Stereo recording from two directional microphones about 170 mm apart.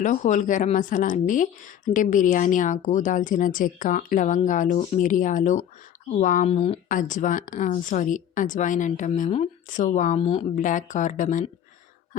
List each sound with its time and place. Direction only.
0.0 s speech: 45° left (ahead or behind)
6.8 s speech: 50° left (ahead or behind)